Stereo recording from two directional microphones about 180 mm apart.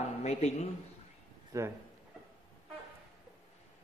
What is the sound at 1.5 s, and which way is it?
Speech, 20° right (ahead or behind).